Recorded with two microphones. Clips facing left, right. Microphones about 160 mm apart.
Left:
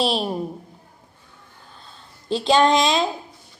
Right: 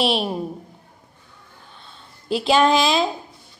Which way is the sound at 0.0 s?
Centre (ahead or behind).